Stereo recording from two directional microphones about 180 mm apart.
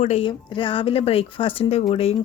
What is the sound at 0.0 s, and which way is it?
A woman's voice, 35° left (ahead or behind).